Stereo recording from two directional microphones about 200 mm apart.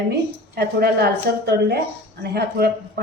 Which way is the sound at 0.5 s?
50° right (ahead or behind).